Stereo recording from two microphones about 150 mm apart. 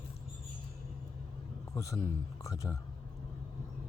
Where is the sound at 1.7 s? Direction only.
20° left (ahead or behind).